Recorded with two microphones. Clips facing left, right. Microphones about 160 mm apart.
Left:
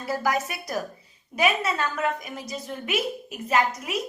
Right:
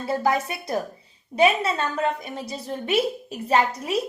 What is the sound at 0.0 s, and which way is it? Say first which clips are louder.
A woman's voice: right 3 dB; 25° right (ahead or behind).